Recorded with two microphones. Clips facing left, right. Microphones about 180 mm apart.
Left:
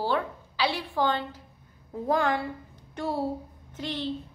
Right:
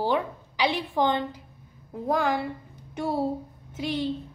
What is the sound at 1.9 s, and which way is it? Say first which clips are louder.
A woman's voice: even; 5° right (ahead or behind).